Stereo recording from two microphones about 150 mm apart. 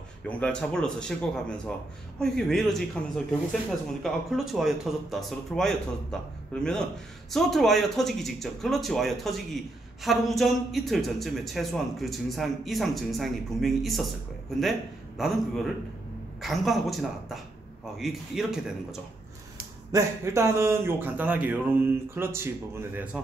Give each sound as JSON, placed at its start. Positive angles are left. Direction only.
{"t": 0.3, "sound": "a man's voice", "side_deg": 5}
{"t": 19.9, "sound": "speech", "side_deg": -20}